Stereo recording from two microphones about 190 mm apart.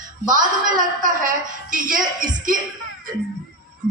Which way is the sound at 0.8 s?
45° right (ahead or behind).